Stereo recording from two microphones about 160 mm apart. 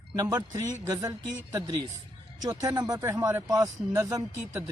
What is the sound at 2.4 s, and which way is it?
Speech, 25° right (ahead or behind).